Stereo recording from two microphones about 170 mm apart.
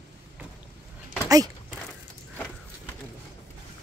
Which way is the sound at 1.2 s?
20° right (ahead or behind).